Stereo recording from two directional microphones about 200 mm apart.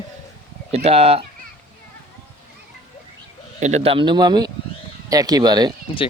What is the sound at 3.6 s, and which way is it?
Speech, 30° right (ahead or behind).